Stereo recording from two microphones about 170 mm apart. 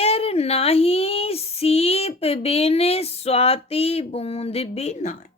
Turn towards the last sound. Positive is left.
turn(degrees=50)  # may be behind; listen again after turning